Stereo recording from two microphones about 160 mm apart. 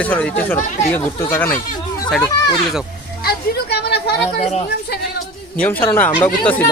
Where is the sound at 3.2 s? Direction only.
85° left.